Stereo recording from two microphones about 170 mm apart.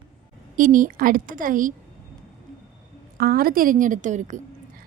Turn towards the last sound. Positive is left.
turn(degrees=-45)  # may be behind; listen again after turning